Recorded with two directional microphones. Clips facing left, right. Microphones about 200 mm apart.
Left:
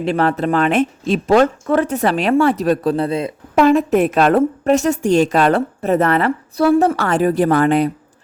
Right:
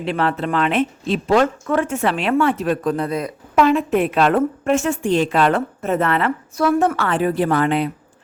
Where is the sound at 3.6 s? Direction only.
40° left (ahead or behind).